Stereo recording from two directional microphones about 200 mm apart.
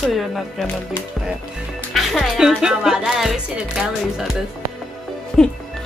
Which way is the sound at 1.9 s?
Centre (ahead or behind).